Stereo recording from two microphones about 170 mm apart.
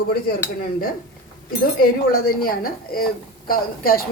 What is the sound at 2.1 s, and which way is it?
Speech, 60° left (ahead or behind).